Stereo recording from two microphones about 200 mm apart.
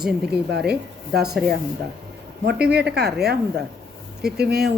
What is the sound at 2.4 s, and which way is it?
Speech, 55° right (ahead or behind).